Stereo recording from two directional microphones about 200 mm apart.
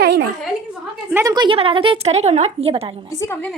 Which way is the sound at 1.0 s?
15° right (ahead or behind).